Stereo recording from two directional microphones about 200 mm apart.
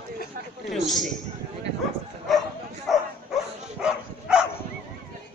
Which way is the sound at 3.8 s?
5° right (ahead or behind).